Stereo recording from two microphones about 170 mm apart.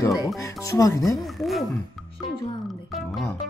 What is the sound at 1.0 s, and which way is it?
Speech, centre (ahead or behind).